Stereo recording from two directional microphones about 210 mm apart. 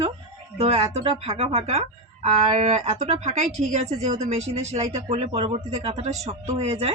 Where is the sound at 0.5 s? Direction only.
30° right (ahead or behind).